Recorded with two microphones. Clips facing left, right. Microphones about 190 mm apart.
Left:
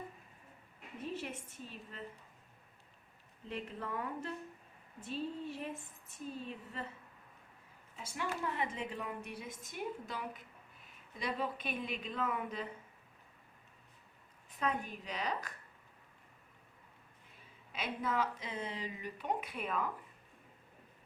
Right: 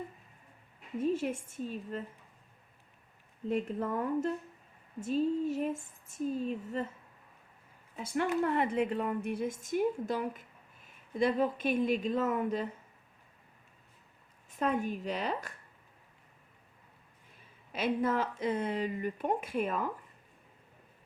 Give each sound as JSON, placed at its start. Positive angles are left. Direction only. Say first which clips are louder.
{"t": 1.1, "sound": "speech", "louder": "right 9 dB", "side_deg": -45}
{"t": 3.5, "sound": "speech", "louder": "right 9 dB", "side_deg": -45}
{"t": 7.9, "sound": "speech", "louder": "right 10 dB", "side_deg": -55}
{"t": 14.6, "sound": "speech", "louder": "right 6 dB", "side_deg": -45}
{"t": 17.7, "sound": "speech", "louder": "right 8 dB", "side_deg": -50}